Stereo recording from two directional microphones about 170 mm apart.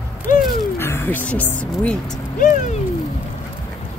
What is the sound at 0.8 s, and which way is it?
Speech, 10° left (ahead or behind).